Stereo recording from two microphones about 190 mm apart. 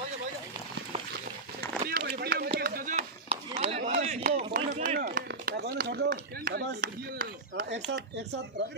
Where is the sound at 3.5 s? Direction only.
30° right (ahead or behind); by 8.4 s 65° right (ahead or behind).